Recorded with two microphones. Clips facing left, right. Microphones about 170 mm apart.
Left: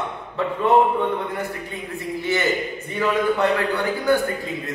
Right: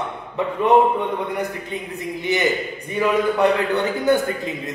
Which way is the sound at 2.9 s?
20° right (ahead or behind).